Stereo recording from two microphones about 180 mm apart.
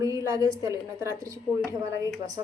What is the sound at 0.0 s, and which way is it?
A woman's voice, 20° right (ahead or behind).